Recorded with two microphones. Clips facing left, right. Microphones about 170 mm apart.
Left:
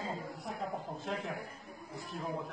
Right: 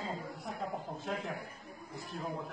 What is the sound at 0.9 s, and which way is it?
A man's voice, centre (ahead or behind).